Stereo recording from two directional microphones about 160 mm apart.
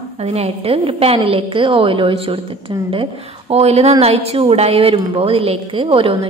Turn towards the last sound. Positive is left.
turn(degrees=-35)  # may be behind; listen again after turning